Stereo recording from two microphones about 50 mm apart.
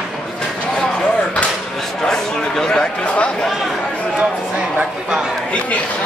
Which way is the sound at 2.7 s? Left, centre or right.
Centre.